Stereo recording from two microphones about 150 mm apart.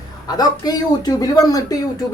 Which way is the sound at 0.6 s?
25° left (ahead or behind).